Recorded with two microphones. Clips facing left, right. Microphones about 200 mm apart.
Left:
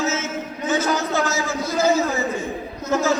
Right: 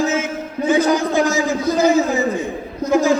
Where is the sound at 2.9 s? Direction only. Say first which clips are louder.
Right 5 dB; 15° right (ahead or behind).